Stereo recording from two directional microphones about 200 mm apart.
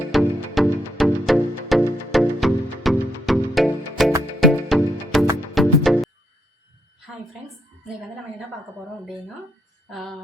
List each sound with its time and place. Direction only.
0.1 s music: centre (ahead or behind)
9.9 s music: centre (ahead or behind)